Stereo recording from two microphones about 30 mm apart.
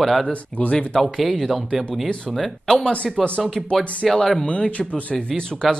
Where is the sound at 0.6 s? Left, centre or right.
Left.